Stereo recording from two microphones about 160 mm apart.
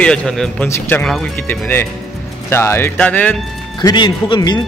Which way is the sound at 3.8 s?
30° left (ahead or behind).